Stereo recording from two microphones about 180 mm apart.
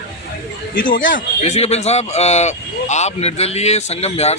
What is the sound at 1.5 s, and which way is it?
A man's voice, 35° left (ahead or behind).